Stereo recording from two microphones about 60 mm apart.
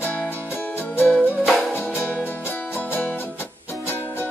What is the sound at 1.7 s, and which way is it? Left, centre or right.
Music, left.